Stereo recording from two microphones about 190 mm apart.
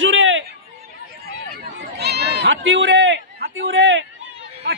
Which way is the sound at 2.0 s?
60° right (ahead or behind).